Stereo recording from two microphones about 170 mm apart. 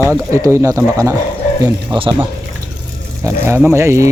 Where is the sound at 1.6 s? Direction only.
30° right (ahead or behind).